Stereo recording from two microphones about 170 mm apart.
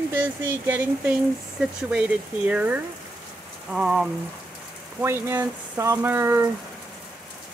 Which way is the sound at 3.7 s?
5° right (ahead or behind).